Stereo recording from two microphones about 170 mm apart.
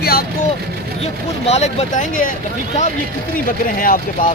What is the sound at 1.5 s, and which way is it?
Speech, 40° left (ahead or behind).